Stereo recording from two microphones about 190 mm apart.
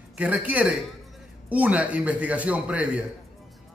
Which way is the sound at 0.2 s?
5° right (ahead or behind).